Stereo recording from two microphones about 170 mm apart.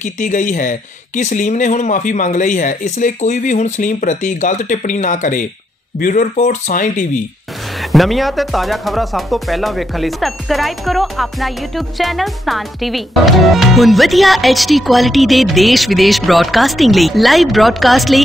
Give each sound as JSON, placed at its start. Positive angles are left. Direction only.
{"t": 0.0, "sound": "speech", "side_deg": 50}
{"t": 7.8, "sound": "speech", "side_deg": 0}